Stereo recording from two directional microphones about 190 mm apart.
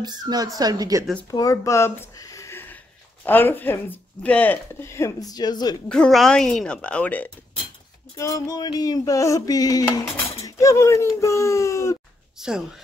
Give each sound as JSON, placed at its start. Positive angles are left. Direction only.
{"t": 0.0, "sound": "a woman's voice", "side_deg": -20}
{"t": 1.3, "sound": "speech", "side_deg": 20}
{"t": 5.9, "sound": "speech", "side_deg": 5}
{"t": 8.2, "sound": "a sound", "side_deg": 15}
{"t": 10.4, "sound": "speech", "side_deg": 15}
{"t": 12.4, "sound": "speech", "side_deg": -5}